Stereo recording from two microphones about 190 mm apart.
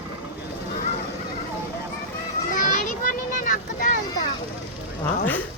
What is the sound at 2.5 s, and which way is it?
Children playing, 45° left (ahead or behind).